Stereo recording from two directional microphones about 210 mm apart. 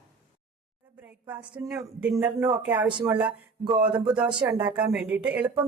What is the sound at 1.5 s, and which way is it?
Speech, 15° right (ahead or behind).